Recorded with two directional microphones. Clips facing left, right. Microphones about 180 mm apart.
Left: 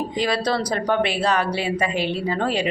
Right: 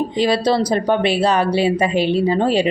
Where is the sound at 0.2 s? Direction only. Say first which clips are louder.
Right 6 dB; 30° right (ahead or behind).